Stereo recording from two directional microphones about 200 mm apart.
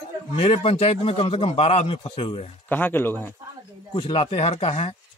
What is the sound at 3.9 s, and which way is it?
Speech, 25° left (ahead or behind).